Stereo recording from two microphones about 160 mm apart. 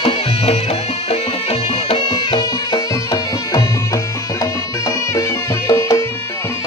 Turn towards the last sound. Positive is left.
turn(degrees=20)  # may be behind; listen again after turning